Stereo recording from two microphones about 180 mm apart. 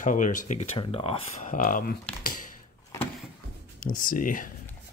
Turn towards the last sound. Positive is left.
turn(degrees=50)  # may be behind; listen again after turning